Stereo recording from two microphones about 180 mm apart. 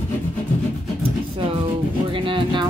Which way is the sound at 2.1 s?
30° right (ahead or behind).